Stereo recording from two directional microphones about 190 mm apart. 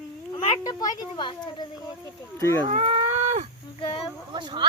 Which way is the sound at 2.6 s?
30° right (ahead or behind).